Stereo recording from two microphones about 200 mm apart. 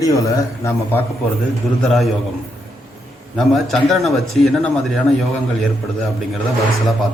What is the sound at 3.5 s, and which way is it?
A man's voice, centre (ahead or behind).